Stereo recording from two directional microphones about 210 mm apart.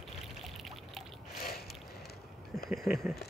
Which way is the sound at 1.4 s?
45° left (ahead or behind).